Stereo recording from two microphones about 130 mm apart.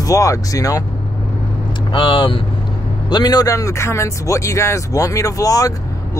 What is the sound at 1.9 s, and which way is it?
Speech, 40° left (ahead or behind).